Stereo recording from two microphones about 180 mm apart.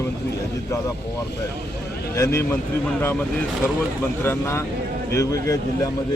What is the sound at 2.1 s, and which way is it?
Speech, 15° left (ahead or behind).